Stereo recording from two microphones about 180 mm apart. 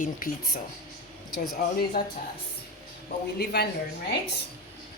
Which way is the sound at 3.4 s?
65° left (ahead or behind).